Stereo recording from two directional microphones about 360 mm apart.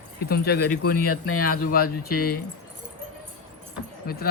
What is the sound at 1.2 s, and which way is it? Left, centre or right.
Speech, left.